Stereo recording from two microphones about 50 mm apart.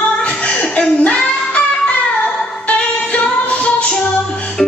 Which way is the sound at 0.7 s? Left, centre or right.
Left.